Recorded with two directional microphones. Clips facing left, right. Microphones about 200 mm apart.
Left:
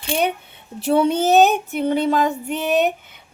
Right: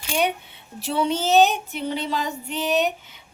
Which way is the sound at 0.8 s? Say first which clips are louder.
Left 6 dB; 55° left (ahead or behind).